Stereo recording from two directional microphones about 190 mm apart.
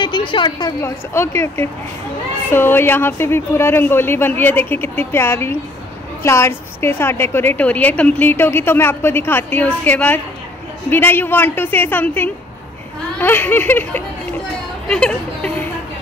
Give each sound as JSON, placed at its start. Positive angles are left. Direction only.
{"t": 0.0, "sound": "a woman's voice", "side_deg": 25}